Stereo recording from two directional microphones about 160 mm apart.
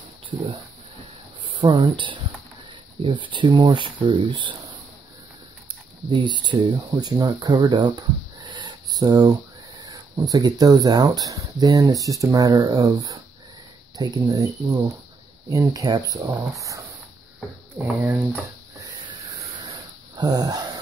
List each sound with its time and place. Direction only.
1.5 s speech: 30° right (ahead or behind)
6.0 s speech: 30° right (ahead or behind)
17.7 s speech: 10° right (ahead or behind)
19.6 s a sound: 30° right (ahead or behind)